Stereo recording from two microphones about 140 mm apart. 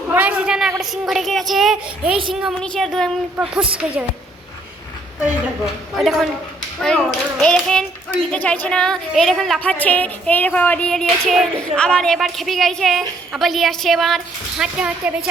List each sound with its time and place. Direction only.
0.1 s a sound: 10° right (ahead or behind)
0.8 s music: centre (ahead or behind)
5.2 s music: centre (ahead or behind)
9.6 s music: 10° left (ahead or behind)
14.6 s speech: 10° right (ahead or behind)